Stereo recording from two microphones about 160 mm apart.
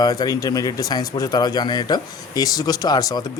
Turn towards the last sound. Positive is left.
turn(degrees=25)  # may be behind; listen again after turning